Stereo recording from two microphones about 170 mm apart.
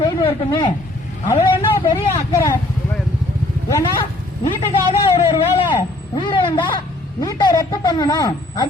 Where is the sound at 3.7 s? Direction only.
20° left (ahead or behind).